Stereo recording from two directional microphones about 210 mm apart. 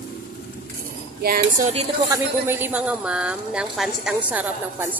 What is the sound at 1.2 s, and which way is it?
Speech, 45° right (ahead or behind).